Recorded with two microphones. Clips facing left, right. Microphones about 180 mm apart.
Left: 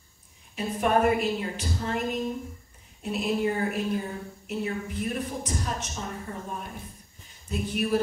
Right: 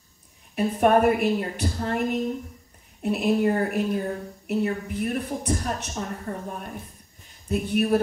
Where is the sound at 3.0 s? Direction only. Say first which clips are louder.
Right 5 dB; 60° right (ahead or behind).